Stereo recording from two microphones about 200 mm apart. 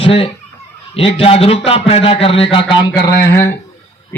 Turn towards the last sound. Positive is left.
turn(degrees=15)  # may be behind; listen again after turning